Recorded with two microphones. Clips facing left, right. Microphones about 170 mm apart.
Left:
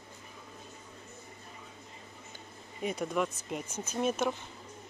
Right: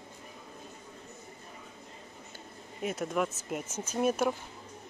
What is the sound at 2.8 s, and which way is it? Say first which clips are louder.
A man's voice: even; centre (ahead or behind).